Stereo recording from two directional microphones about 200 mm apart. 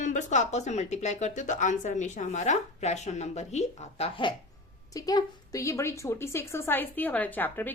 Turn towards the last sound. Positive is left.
turn(degrees=10)  # may be behind; listen again after turning